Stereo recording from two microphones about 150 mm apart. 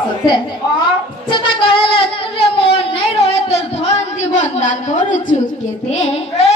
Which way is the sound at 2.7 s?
40° left (ahead or behind).